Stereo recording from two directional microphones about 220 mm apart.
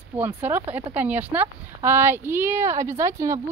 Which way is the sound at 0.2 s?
10° right (ahead or behind).